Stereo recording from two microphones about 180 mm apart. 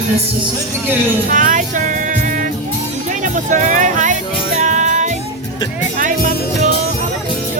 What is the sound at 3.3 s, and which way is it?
Music, 45° right (ahead or behind).